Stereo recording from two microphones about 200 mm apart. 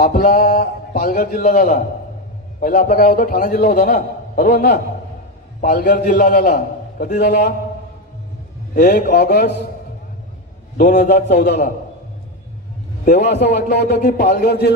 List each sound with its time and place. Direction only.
0.0 s a man's voice: 45° left (ahead or behind)
8.7 s a man's voice: 45° left (ahead or behind)
10.8 s a man's voice: 40° left (ahead or behind)
11.1 s a man's voice: 55° left (ahead or behind)
13.6 s speech: 55° left (ahead or behind)
14.0 s a man's voice: 40° left (ahead or behind)
14.3 s speech: 55° left (ahead or behind)